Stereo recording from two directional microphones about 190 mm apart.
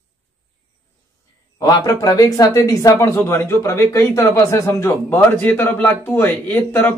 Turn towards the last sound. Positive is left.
turn(degrees=10)  # may be behind; listen again after turning